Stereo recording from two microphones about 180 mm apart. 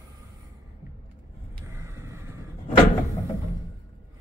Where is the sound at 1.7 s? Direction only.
15° right (ahead or behind).